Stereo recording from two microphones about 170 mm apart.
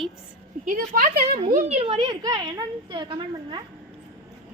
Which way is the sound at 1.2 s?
35° right (ahead or behind).